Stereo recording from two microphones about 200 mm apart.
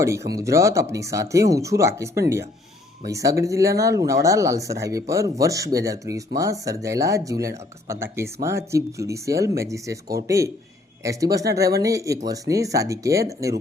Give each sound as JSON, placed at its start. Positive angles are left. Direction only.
{"t": 0.0, "sound": "speech", "side_deg": -15}